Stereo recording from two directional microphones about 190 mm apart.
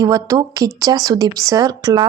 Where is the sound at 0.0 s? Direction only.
20° right (ahead or behind).